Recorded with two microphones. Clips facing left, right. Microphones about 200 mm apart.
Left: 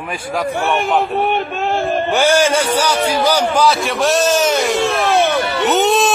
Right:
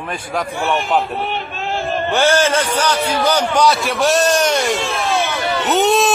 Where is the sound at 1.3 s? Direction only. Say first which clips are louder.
Left 6 dB; 55° left (ahead or behind).